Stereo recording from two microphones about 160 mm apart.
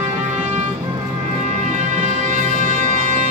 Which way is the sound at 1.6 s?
50° right (ahead or behind).